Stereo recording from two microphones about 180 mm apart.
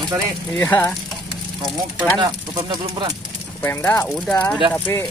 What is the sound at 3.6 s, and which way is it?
Speech, 10° left (ahead or behind).